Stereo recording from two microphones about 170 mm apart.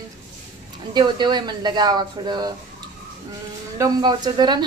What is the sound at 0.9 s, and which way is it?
Speech, 25° right (ahead or behind).